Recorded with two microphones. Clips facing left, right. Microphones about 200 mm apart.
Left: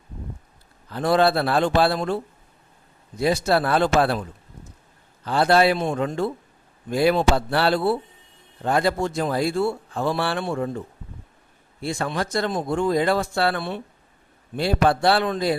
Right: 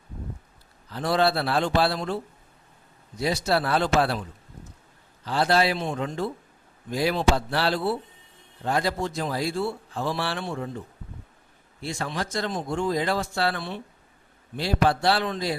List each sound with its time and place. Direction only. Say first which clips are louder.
0.9 s a man's voice: left 4 dB; 55° left (ahead or behind)
3.2 s a man's voice: left 4 dB; 55° left (ahead or behind)
5.2 s speech: left 5 dB; 55° left (ahead or behind)
11.9 s speech: left 5 dB; 55° left (ahead or behind)